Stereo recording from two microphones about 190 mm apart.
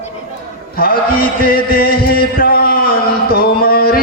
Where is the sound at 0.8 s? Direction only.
50° left (ahead or behind).